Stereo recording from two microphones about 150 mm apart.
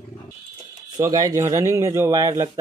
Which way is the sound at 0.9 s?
25° right (ahead or behind).